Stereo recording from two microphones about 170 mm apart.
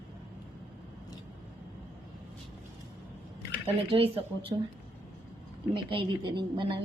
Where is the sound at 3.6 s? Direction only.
35° right (ahead or behind).